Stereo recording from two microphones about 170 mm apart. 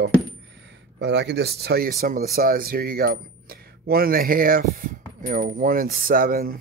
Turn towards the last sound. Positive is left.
turn(degrees=-60)  # may be behind; listen again after turning